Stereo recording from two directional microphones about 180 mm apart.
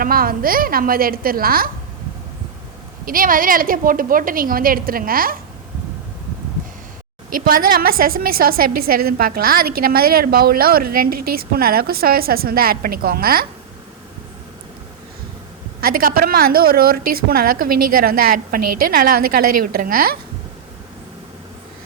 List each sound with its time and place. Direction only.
0.0 s a woman's voice: 55° right (ahead or behind)
3.1 s a woman's voice: 50° right (ahead or behind)
7.4 s a woman's voice: 55° right (ahead or behind)
15.8 s a woman's voice: 55° right (ahead or behind)